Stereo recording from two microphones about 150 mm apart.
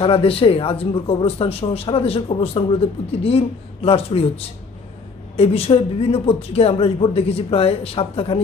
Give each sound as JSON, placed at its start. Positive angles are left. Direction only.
{"t": 0.0, "sound": "speech", "side_deg": 40}
{"t": 5.3, "sound": "speech", "side_deg": 40}